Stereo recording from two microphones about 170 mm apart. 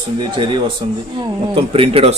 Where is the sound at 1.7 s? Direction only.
35° right (ahead or behind).